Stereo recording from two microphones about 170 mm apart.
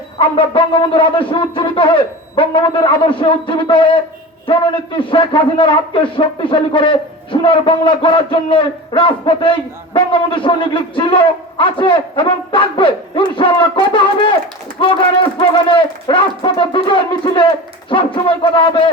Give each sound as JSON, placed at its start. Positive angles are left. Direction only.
{"t": 0.2, "sound": "a man's voice", "side_deg": 30}